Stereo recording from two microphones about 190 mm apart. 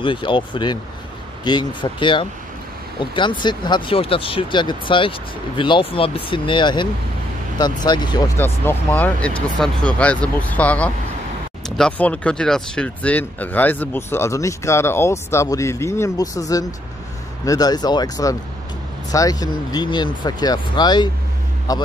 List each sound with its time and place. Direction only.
0.0 s speech: 25° left (ahead or behind)
8.4 s speech: 10° left (ahead or behind)